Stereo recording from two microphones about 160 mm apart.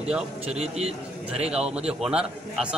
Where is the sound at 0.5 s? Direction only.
40° right (ahead or behind).